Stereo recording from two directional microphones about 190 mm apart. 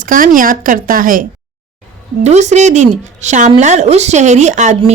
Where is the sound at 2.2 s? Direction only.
35° right (ahead or behind).